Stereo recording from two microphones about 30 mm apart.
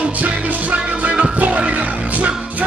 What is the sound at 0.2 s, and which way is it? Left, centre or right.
Music, right.